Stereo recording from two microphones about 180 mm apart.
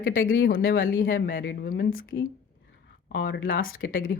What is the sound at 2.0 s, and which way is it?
Speech, 90° left.